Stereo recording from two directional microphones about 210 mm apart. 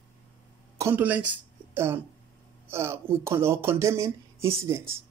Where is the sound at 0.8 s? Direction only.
10° right (ahead or behind).